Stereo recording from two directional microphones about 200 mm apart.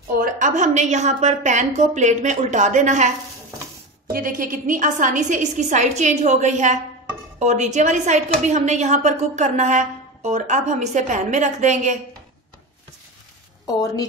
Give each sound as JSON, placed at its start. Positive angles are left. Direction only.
{"t": 0.1, "sound": "a woman's voice", "side_deg": -40}
{"t": 4.1, "sound": "a woman's voice", "side_deg": -45}
{"t": 13.7, "sound": "a woman's voice", "side_deg": 20}